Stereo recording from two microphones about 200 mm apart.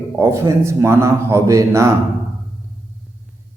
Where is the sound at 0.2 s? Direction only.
15° right (ahead or behind).